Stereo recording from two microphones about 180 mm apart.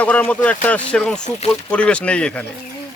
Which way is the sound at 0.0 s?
5° left (ahead or behind).